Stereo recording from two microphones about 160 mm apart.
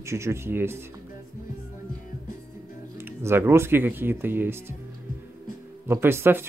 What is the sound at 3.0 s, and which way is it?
Speech, 15° right (ahead or behind).